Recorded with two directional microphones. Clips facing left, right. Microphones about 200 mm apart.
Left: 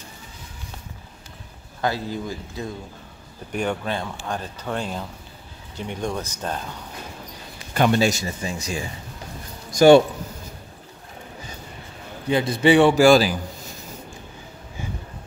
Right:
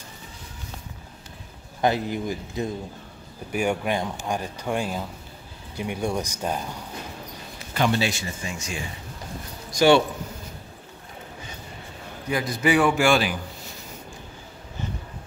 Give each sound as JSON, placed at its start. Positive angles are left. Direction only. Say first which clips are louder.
{"t": 1.8, "sound": "speech", "louder": "right 2 dB", "side_deg": -20}
{"t": 7.7, "sound": "a man's voice", "louder": "left 4 dB", "side_deg": 50}
{"t": 12.3, "sound": "a man's voice", "louder": "left 5 dB", "side_deg": 30}